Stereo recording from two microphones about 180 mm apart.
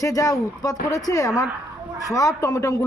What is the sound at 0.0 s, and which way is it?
A man's voice, 20° left (ahead or behind).